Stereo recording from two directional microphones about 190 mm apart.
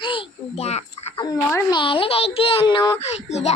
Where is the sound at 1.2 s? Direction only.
20° left (ahead or behind).